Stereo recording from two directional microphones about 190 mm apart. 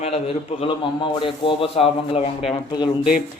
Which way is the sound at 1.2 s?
30° left (ahead or behind).